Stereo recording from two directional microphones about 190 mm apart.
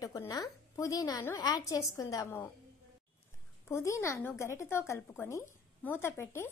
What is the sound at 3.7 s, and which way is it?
Speech, 15° left (ahead or behind).